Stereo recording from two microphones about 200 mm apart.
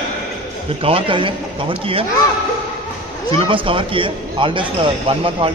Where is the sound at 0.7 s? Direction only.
30° right (ahead or behind).